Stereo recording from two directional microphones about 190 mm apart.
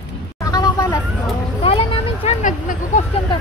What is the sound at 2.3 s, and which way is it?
Speech, 40° left (ahead or behind).